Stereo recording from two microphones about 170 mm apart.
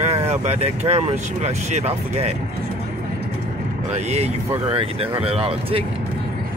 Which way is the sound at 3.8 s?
40° right (ahead or behind).